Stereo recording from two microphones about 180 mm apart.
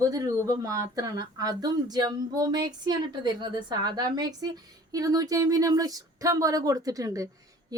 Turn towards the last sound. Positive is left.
turn(degrees=-20)  # may be behind; listen again after turning